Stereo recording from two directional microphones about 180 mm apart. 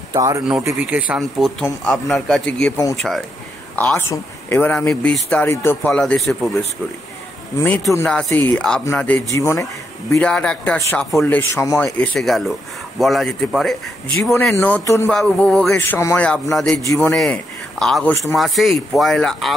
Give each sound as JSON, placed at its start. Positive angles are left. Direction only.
{"t": 0.1, "sound": "speech", "side_deg": -20}
{"t": 3.7, "sound": "speech", "side_deg": 10}
{"t": 7.6, "sound": "speech", "side_deg": 10}
{"t": 10.1, "sound": "speech", "side_deg": 5}
{"t": 16.8, "sound": "speech", "side_deg": 15}
{"t": 17.1, "sound": "speech", "side_deg": 0}